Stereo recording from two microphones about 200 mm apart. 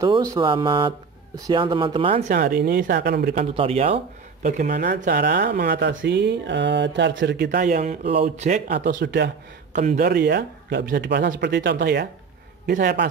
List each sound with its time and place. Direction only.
0.0 s speech: 15° right (ahead or behind)
2.3 s speech: 55° right (ahead or behind)
3.3 s speech: 30° right (ahead or behind); by 7.6 s 60° right (ahead or behind)
7.6 s speech: 40° right (ahead or behind)
8.6 s speech: 55° right (ahead or behind)
9.7 s a man's voice: 35° right (ahead or behind)
10.0 s speech: 55° right (ahead or behind)